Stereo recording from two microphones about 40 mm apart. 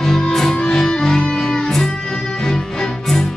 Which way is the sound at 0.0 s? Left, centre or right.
Centre.